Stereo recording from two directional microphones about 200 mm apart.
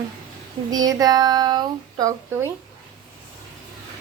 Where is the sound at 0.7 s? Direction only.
20° right (ahead or behind).